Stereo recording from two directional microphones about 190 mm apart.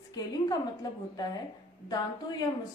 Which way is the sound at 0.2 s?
20° left (ahead or behind).